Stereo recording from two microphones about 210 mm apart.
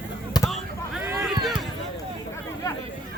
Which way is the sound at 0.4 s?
20° left (ahead or behind).